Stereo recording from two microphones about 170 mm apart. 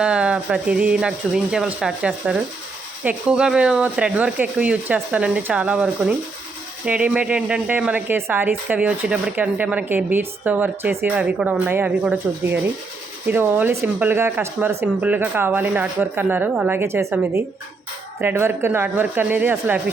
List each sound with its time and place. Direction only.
0.0 s speech: 5° right (ahead or behind)